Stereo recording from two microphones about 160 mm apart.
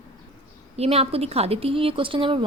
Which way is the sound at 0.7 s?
40° right (ahead or behind).